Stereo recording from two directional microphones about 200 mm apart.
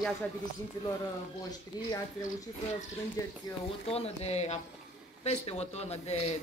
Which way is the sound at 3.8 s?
30° left (ahead or behind).